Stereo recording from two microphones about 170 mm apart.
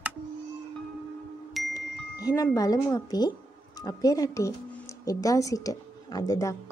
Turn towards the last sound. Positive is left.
turn(degrees=20)  # may be behind; listen again after turning